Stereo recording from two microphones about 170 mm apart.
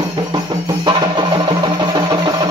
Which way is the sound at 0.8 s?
25° right (ahead or behind).